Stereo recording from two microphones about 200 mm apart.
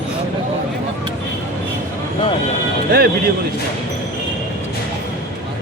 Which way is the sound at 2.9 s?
50° right (ahead or behind).